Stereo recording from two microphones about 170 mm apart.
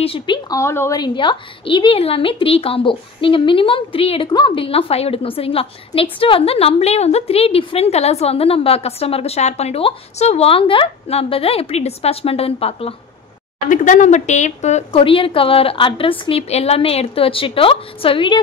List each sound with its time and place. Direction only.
0.0 s a woman's voice: 35° left (ahead or behind)
0.5 s a woman's voice: 15° left (ahead or behind); by 12.9 s 35° left (ahead or behind)
13.7 s a woman's voice: 45° left (ahead or behind); by 18.4 s 30° left (ahead or behind)